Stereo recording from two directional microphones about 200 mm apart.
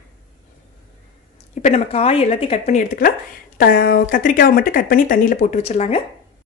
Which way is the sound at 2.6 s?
40° left (ahead or behind).